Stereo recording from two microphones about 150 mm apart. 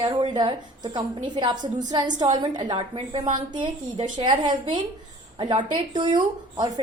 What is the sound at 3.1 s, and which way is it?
Speech, 50° right (ahead or behind).